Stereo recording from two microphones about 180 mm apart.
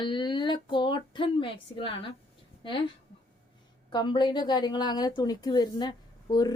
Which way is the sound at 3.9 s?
25° left (ahead or behind).